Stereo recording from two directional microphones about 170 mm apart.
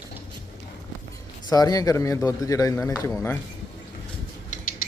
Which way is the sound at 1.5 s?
20° left (ahead or behind).